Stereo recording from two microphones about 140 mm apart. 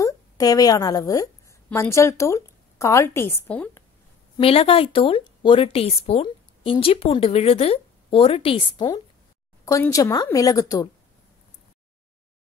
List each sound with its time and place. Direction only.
0.0 s a woman's voice: 25° left (ahead or behind); by 3.8 s 10° left (ahead or behind)
4.4 s a woman's voice: 40° left (ahead or behind)
9.7 s a woman's voice: 25° left (ahead or behind)